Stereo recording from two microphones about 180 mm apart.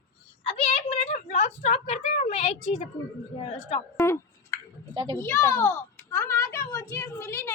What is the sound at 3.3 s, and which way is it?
Speech, 35° left (ahead or behind).